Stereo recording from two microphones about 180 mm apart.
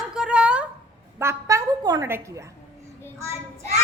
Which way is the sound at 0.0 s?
5° right (ahead or behind).